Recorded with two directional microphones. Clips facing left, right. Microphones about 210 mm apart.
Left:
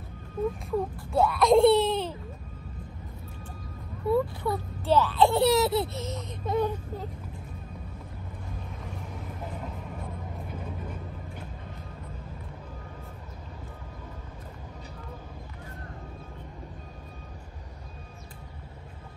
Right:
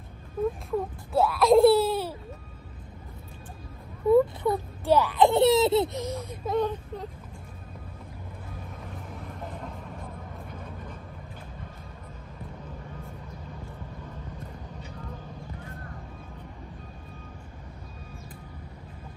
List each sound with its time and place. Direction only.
0.7 s speech: centre (ahead or behind)
4.1 s a child's voice: 20° right (ahead or behind)
6.0 s speech: 10° right (ahead or behind)
6.5 s speech: centre (ahead or behind)
9.1 s vehicle: centre (ahead or behind)